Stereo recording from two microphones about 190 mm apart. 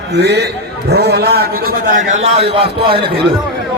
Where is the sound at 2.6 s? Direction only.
30° right (ahead or behind).